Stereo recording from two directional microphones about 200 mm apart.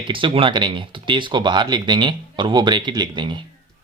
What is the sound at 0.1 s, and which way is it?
Speech, 25° right (ahead or behind).